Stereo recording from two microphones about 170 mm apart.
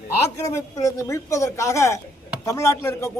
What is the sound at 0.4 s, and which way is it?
Speech, 20° left (ahead or behind).